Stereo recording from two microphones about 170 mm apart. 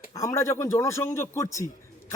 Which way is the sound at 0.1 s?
20° left (ahead or behind).